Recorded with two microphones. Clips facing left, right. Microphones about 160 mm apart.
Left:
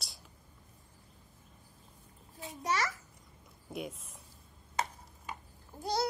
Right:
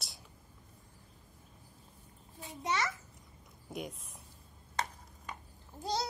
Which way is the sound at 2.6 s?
25° right (ahead or behind).